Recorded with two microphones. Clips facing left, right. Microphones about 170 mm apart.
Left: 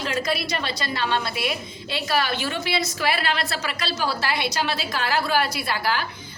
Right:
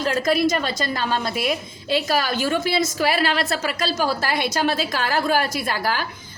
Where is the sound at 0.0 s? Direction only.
45° right (ahead or behind).